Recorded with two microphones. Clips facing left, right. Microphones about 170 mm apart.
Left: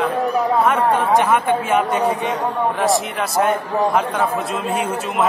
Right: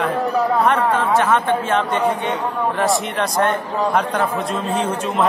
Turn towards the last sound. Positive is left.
turn(degrees=10)  # may be behind; listen again after turning